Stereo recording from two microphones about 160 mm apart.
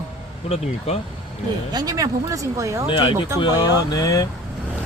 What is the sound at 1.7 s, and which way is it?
Speech, 25° right (ahead or behind).